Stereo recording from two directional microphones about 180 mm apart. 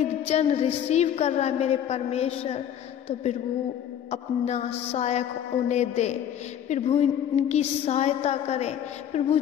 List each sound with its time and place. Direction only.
0.3 s a woman's voice: 35° left (ahead or behind)
4.1 s a woman's voice: 35° left (ahead or behind)